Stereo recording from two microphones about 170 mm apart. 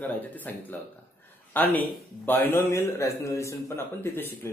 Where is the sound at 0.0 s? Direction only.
10° left (ahead or behind).